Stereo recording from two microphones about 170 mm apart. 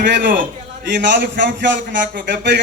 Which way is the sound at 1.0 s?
90° right.